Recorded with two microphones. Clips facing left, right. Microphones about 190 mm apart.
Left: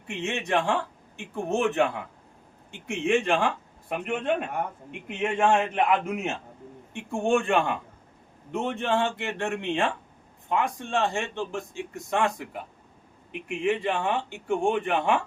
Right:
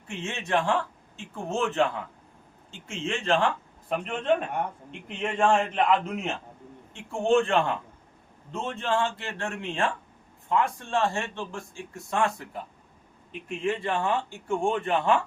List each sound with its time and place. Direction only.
0.1 s speech: 15° left (ahead or behind)
13.5 s speech: 15° left (ahead or behind)